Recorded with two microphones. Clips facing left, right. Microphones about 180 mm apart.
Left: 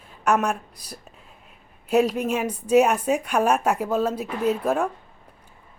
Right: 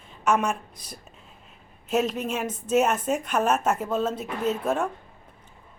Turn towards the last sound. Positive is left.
turn(degrees=10)  # may be behind; listen again after turning